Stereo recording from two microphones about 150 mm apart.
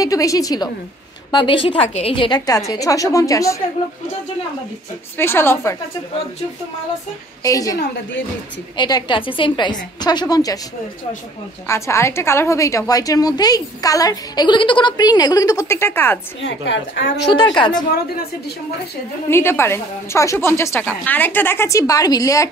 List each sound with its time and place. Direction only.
0.0 s a woman's voice: 20° left (ahead or behind)
5.1 s a woman's voice: 15° left (ahead or behind)
7.4 s a woman's voice: 25° left (ahead or behind)
11.6 s a woman's voice: 20° left (ahead or behind)
17.3 s a woman's voice: 35° left (ahead or behind)
19.3 s a woman's voice: 15° left (ahead or behind)